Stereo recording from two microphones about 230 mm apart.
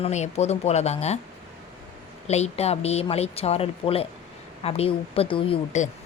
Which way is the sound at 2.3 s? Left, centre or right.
Left.